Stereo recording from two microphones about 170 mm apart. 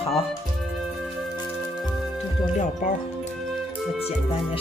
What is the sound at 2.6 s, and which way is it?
Speech, 45° left (ahead or behind).